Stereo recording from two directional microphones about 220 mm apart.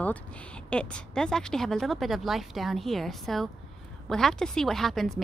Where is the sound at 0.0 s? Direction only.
5° left (ahead or behind).